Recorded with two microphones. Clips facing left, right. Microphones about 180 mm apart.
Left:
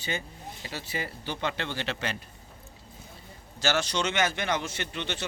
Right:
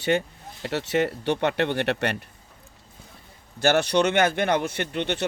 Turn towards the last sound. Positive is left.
turn(degrees=-60)  # may be behind; listen again after turning